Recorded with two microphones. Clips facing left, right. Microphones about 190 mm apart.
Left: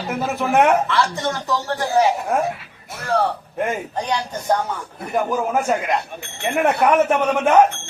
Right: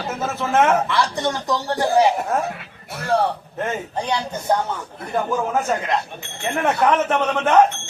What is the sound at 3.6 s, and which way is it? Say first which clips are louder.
Speech: left 2 dB; 10° left (ahead or behind).